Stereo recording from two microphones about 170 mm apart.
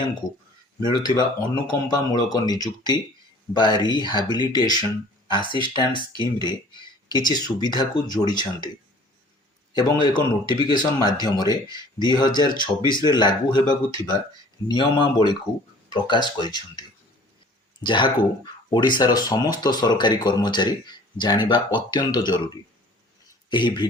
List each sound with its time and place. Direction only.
0.8 s speech: 25° left (ahead or behind)
9.7 s speech: 25° left (ahead or behind)
23.5 s speech: 25° left (ahead or behind)